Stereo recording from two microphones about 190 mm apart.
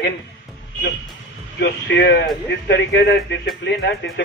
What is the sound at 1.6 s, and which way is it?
Speech, 60° left (ahead or behind).